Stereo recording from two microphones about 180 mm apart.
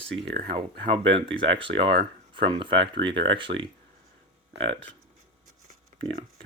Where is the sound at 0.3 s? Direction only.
30° right (ahead or behind).